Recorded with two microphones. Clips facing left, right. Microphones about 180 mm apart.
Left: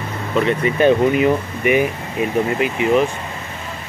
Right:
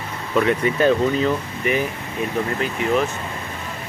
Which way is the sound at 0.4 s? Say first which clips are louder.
Left 2 dB; centre (ahead or behind).